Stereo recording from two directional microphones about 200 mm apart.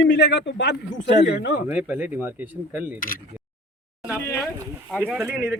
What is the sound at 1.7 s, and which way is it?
Speech, 5° right (ahead or behind).